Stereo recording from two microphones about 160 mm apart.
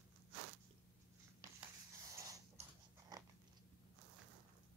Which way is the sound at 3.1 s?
25° right (ahead or behind).